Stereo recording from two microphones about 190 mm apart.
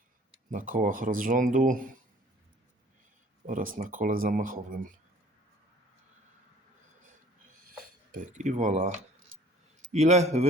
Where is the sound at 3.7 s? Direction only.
45° right (ahead or behind).